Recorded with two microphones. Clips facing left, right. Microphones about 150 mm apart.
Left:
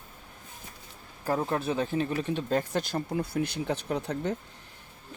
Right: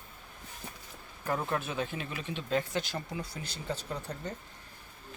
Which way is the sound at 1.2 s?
35° left (ahead or behind).